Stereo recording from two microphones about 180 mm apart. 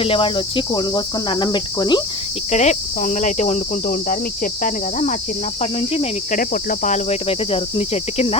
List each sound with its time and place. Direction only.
0.0 s cricket: 30° left (ahead or behind)
2.5 s cricket: 40° left (ahead or behind)
5.9 s cricket: 35° left (ahead or behind)
6.4 s cricket: 50° left (ahead or behind)